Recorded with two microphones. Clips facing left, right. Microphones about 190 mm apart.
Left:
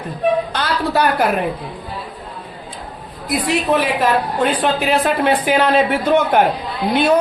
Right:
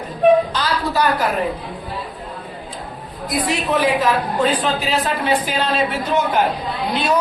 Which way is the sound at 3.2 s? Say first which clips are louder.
Left 3 dB; 65° left (ahead or behind).